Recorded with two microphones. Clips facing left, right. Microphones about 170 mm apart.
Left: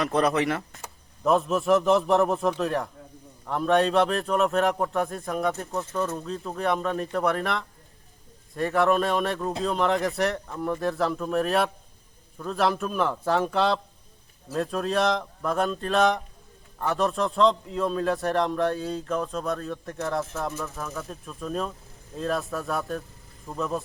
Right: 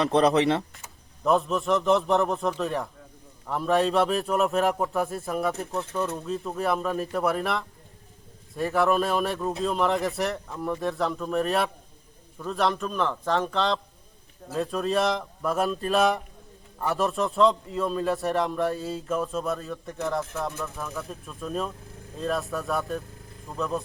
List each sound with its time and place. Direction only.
0.0 s speech: 20° right (ahead or behind)
1.2 s a man's voice: centre (ahead or behind)